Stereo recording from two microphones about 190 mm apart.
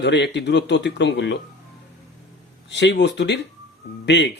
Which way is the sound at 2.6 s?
65° left (ahead or behind).